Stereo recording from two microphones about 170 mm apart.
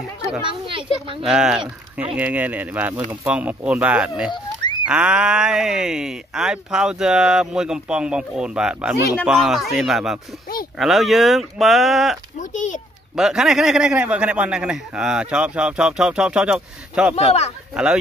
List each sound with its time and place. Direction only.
0.4 s a sound: 30° right (ahead or behind)
1.2 s speech: 5° right (ahead or behind)
4.3 s pig: 25° left (ahead or behind)
4.8 s speech: 5° right (ahead or behind)
12.4 s a child's voice: 45° left (ahead or behind)
13.1 s speech: 5° right (ahead or behind)
17.1 s speech: 35° left (ahead or behind)